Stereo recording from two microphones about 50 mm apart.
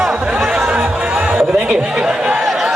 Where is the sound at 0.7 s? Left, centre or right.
Right.